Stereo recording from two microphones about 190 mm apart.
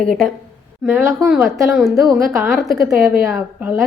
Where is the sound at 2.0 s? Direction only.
20° right (ahead or behind).